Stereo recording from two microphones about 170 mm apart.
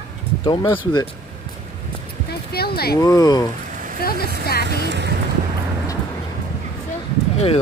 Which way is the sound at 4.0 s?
60° left (ahead or behind).